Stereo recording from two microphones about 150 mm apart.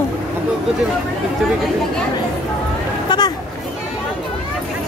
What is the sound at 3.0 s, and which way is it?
Speech, 30° left (ahead or behind).